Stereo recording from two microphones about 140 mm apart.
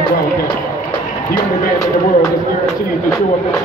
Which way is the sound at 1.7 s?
25° left (ahead or behind).